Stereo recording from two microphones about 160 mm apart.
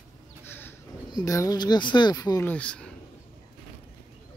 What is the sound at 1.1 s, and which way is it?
Speech, 20° left (ahead or behind).